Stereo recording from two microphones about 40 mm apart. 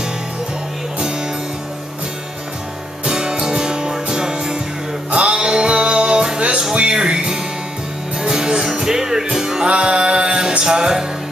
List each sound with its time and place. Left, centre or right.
3.1 s music: centre